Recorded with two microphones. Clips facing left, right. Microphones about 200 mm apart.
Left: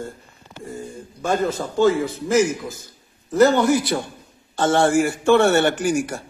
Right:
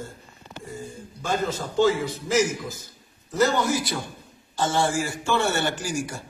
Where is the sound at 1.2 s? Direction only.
55° left (ahead or behind).